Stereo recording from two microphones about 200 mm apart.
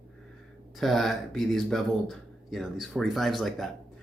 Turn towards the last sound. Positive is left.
turn(degrees=0)  # may be behind; listen again after turning